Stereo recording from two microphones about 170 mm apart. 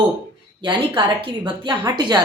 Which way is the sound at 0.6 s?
25° right (ahead or behind).